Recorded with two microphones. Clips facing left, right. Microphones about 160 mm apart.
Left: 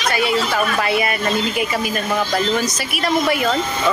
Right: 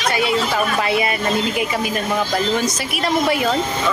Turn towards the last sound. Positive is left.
turn(degrees=-25)  # may be behind; listen again after turning